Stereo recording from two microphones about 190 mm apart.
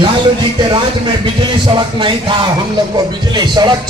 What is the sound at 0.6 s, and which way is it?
Speech, 25° right (ahead or behind).